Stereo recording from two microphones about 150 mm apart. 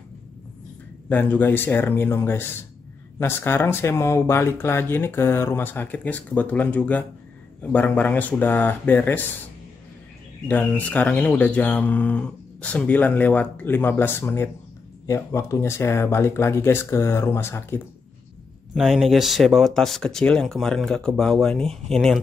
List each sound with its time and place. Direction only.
1.0 s speech: 15° left (ahead or behind)
10.5 s speech: 10° left (ahead or behind)
18.8 s speech: centre (ahead or behind)